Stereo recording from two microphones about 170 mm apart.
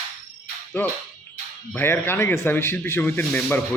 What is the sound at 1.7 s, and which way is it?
A man's voice, 15° left (ahead or behind).